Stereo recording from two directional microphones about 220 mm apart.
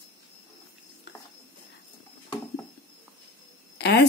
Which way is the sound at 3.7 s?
50° left (ahead or behind).